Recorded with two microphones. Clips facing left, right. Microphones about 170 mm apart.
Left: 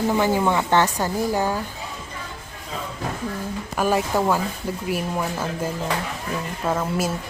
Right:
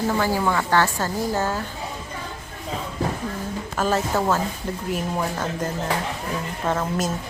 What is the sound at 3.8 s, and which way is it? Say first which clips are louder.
Speech: left 1 dB; 10° left (ahead or behind).